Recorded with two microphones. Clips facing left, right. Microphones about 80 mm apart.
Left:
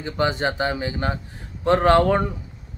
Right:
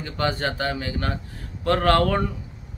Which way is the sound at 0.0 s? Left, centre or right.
Centre.